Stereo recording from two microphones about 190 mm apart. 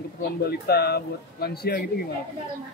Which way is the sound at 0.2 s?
55° left (ahead or behind).